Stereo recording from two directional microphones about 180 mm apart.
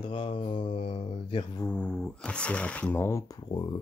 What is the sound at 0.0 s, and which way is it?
Mantra, 30° left (ahead or behind).